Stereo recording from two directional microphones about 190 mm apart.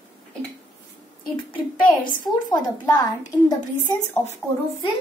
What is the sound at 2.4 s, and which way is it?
Speech, 20° left (ahead or behind).